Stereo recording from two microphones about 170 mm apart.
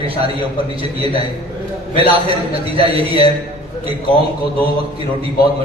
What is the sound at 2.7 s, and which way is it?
Speech, 35° right (ahead or behind).